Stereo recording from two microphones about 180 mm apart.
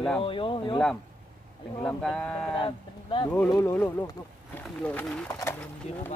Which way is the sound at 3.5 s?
15° left (ahead or behind).